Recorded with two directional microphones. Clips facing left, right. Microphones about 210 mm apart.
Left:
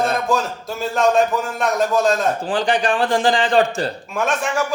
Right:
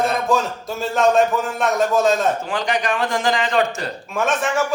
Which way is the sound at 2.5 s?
30° left (ahead or behind).